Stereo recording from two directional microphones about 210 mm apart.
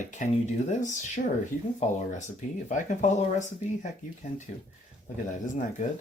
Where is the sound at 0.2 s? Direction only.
40° left (ahead or behind).